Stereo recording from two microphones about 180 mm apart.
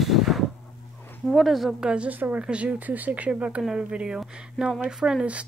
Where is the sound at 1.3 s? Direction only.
Centre (ahead or behind).